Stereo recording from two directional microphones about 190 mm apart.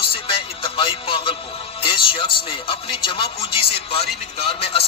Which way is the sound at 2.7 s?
30° left (ahead or behind).